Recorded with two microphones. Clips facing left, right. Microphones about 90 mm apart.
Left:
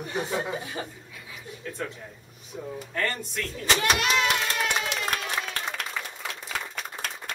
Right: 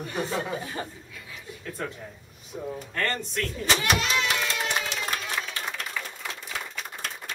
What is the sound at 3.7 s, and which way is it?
Speech, 50° left (ahead or behind).